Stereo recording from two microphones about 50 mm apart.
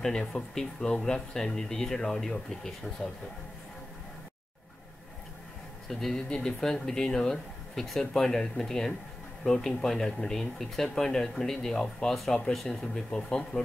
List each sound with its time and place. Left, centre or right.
0.0 s speech: centre
5.9 s speech: centre